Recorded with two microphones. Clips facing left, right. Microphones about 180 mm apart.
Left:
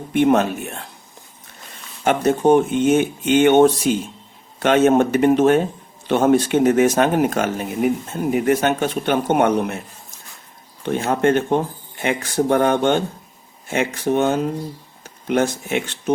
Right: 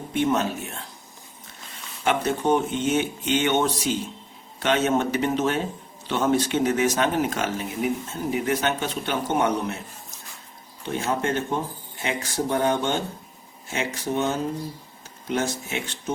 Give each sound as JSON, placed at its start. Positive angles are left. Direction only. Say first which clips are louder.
{"t": 0.1, "sound": "speech", "louder": "left 7 dB", "side_deg": 60}
{"t": 2.0, "sound": "speech", "louder": "left 7 dB", "side_deg": 50}
{"t": 10.8, "sound": "speech", "louder": "left 8 dB", "side_deg": 60}